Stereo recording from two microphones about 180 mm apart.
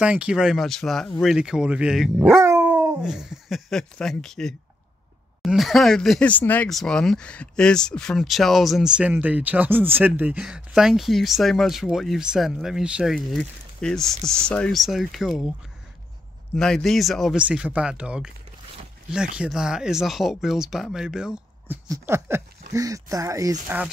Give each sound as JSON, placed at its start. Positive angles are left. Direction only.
{"t": 0.0, "sound": "speech", "side_deg": -5}
{"t": 16.5, "sound": "speech", "side_deg": 5}
{"t": 19.3, "sound": "speech", "side_deg": -5}
{"t": 21.8, "sound": "speech", "side_deg": -15}